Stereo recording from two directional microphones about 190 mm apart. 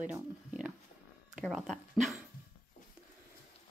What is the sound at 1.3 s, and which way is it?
Dog, centre (ahead or behind).